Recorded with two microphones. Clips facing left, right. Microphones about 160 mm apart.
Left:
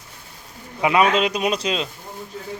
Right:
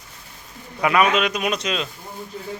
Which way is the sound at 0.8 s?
25° left (ahead or behind).